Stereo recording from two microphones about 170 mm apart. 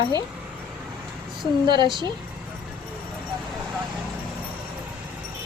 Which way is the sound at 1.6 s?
25° right (ahead or behind).